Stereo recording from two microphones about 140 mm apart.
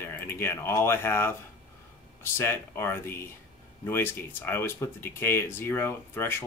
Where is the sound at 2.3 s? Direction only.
15° left (ahead or behind).